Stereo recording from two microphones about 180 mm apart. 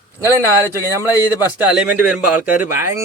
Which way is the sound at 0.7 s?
15° right (ahead or behind).